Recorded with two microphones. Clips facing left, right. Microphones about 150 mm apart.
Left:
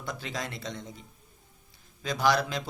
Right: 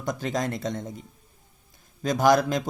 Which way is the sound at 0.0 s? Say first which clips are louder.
Right 8 dB; 45° right (ahead or behind).